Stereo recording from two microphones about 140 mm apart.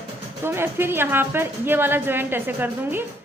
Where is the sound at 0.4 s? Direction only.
15° right (ahead or behind).